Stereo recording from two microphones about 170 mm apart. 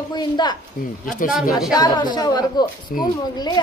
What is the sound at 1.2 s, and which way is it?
Speech, 55° left (ahead or behind).